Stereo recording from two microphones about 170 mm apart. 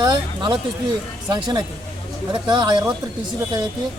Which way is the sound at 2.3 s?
20° right (ahead or behind).